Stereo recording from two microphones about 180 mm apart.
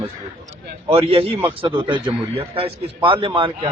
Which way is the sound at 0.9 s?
35° right (ahead or behind).